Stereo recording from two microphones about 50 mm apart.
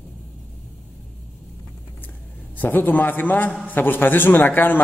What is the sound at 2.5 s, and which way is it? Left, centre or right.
A man's voice, left.